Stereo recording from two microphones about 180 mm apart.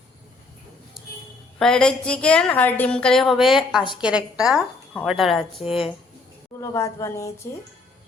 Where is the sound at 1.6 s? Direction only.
5° left (ahead or behind).